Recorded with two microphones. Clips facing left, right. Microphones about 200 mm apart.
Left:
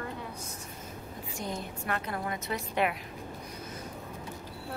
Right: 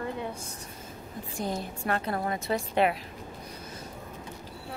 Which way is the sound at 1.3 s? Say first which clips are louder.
Right 4 dB; 35° right (ahead or behind).